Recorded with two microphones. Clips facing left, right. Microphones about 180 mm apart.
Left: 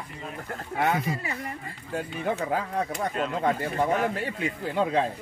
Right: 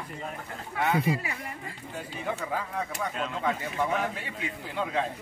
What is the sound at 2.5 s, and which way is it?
Speech, 55° left (ahead or behind).